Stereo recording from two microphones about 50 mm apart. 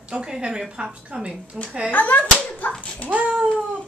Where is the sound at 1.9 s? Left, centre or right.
Left.